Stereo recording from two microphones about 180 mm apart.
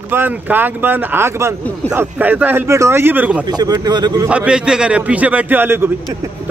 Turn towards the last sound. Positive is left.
turn(degrees=-10)  # may be behind; listen again after turning